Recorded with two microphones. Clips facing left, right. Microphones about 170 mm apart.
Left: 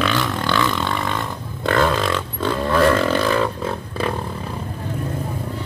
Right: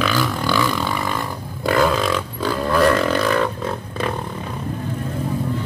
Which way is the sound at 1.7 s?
5° right (ahead or behind).